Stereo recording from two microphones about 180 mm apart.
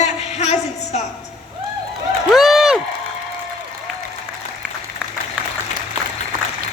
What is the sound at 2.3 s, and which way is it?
Run, centre (ahead or behind).